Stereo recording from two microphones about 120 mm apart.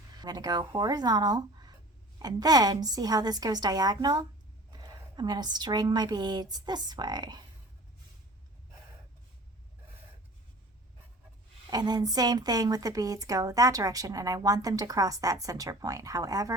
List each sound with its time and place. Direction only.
0.2 s a woman's voice: 35° right (ahead or behind)
11.7 s a woman's voice: 35° right (ahead or behind)